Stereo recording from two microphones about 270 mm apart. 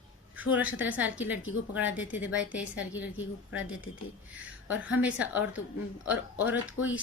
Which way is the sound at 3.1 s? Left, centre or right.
Left.